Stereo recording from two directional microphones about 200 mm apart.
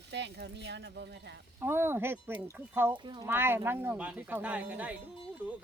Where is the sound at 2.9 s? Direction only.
25° right (ahead or behind).